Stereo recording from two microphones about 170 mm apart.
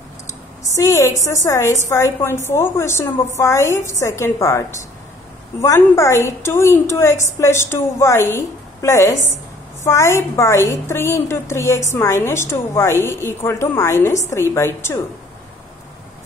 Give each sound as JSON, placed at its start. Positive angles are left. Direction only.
{"t": 0.7, "sound": "a woman's voice", "side_deg": 20}